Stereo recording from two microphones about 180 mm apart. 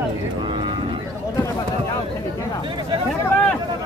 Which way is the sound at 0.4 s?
25° right (ahead or behind).